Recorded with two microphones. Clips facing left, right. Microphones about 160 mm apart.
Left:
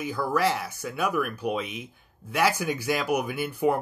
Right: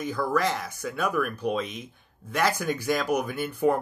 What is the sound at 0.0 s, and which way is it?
Speech, 10° left (ahead or behind).